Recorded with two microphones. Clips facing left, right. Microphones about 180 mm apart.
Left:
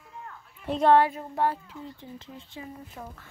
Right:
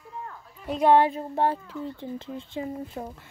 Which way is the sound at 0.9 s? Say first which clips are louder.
Right 1 dB; 25° right (ahead or behind).